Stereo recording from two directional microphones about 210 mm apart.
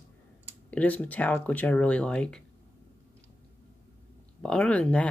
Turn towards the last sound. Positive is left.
turn(degrees=5)  # may be behind; listen again after turning